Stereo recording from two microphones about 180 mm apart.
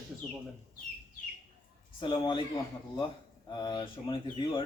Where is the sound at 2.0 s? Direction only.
25° left (ahead or behind).